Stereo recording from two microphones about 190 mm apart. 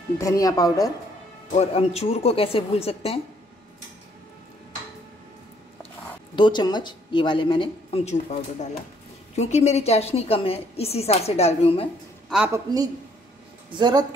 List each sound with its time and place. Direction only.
0.2 s speech: 20° left (ahead or behind)
1.5 s a woman's voice: 35° left (ahead or behind)
6.3 s a woman's voice: 25° left (ahead or behind)
13.7 s a woman's voice: 25° right (ahead or behind)